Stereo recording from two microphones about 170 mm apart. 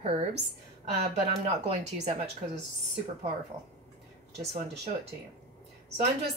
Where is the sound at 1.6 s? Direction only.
40° right (ahead or behind).